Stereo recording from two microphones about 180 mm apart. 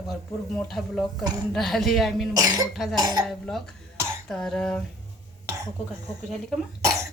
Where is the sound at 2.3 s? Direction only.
20° right (ahead or behind).